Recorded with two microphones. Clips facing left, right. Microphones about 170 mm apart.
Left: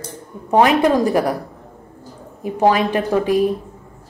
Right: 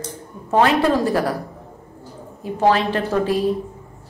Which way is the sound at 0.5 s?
15° left (ahead or behind).